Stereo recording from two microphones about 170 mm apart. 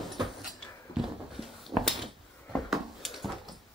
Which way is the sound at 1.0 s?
Centre (ahead or behind).